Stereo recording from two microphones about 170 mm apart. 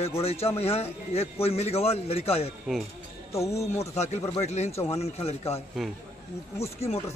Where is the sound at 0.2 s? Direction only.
35° left (ahead or behind).